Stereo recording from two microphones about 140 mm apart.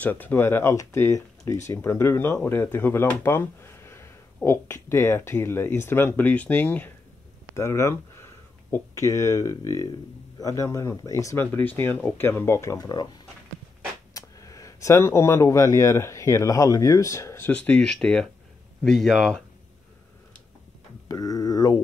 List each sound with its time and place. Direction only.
0.0 s speech: 15° left (ahead or behind); by 13.1 s 30° left (ahead or behind)
14.1 s speech: 25° left (ahead or behind)
17.5 s speech: 10° left (ahead or behind)
21.1 s speech: 25° left (ahead or behind)